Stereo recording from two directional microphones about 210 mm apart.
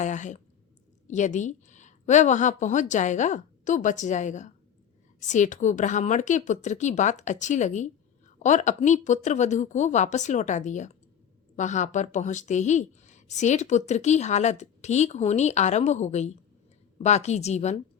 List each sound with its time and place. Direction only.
0.0 s speech: 35° left (ahead or behind)